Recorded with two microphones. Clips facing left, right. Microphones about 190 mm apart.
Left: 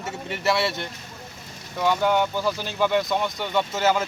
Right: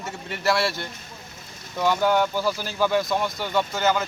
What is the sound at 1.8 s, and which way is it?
Speech, 5° right (ahead or behind).